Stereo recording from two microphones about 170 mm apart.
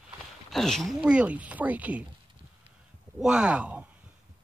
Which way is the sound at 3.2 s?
5° right (ahead or behind).